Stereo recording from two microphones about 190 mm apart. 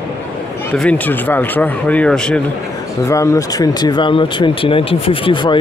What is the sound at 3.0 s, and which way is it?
Speech, 15° left (ahead or behind).